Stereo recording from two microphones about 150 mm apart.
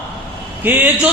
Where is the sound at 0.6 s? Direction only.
10° right (ahead or behind).